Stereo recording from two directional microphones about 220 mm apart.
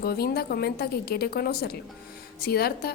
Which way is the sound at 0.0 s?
45° left (ahead or behind).